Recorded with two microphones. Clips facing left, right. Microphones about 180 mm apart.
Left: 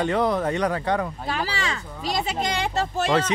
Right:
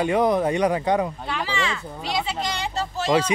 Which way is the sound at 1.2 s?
40° left (ahead or behind).